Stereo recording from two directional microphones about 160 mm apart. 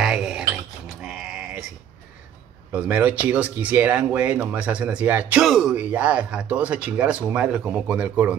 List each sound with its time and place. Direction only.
0.0 s sheep: 5° right (ahead or behind)
2.7 s speech: 10° right (ahead or behind)